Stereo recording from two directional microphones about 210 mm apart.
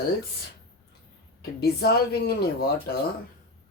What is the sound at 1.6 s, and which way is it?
Speech, 50° left (ahead or behind).